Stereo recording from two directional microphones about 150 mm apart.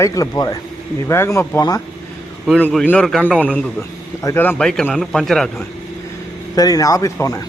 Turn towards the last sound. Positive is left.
turn(degrees=20)  # may be behind; listen again after turning